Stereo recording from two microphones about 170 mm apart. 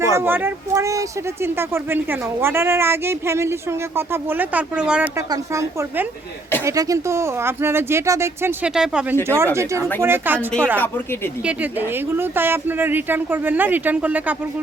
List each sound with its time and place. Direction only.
0.0 s speech: 15° right (ahead or behind)
5.1 s speech: 20° right (ahead or behind)
10.8 s speech: 10° left (ahead or behind)
11.4 s speech: 10° right (ahead or behind)